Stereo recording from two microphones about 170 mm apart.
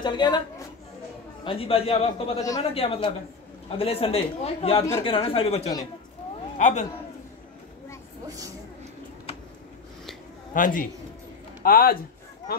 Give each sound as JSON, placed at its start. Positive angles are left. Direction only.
{"t": 0.0, "sound": "a woman's voice", "side_deg": 25}
{"t": 1.4, "sound": "a man's voice", "side_deg": 30}
{"t": 10.5, "sound": "a man's voice", "side_deg": 55}